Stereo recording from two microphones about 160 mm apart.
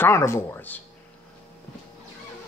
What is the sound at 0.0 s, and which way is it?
Speech, 15° left (ahead or behind).